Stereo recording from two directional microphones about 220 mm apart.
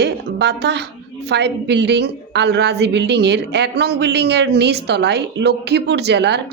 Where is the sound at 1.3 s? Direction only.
50° right (ahead or behind).